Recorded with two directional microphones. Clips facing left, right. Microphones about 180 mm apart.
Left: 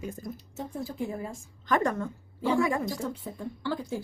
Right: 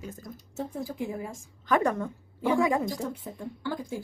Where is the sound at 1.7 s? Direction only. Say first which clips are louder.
Right 1 dB; 10° right (ahead or behind).